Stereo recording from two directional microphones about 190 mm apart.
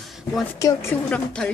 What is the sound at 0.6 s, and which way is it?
Speech, 15° left (ahead or behind).